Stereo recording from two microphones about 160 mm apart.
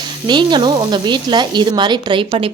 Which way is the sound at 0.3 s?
30° right (ahead or behind).